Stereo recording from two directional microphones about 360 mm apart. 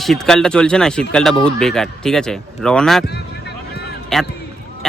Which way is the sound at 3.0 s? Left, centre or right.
Left.